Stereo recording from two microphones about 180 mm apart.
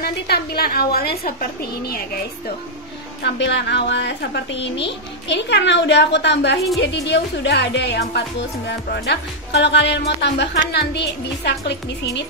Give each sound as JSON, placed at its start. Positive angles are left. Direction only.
{"t": 0.0, "sound": "a woman's voice", "side_deg": 60}
{"t": 3.2, "sound": "speech", "side_deg": 75}